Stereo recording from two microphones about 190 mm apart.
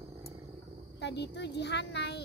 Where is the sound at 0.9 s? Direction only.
65° left (ahead or behind).